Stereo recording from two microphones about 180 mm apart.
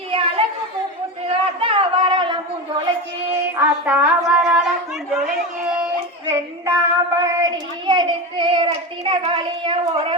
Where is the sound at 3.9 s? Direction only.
5° right (ahead or behind).